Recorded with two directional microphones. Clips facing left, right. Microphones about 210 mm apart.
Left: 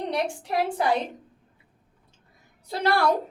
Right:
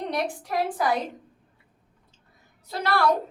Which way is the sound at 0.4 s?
25° left (ahead or behind).